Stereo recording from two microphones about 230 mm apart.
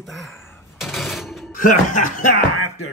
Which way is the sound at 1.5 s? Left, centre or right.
Left.